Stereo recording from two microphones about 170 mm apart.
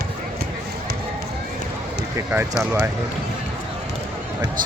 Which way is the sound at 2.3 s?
15° right (ahead or behind).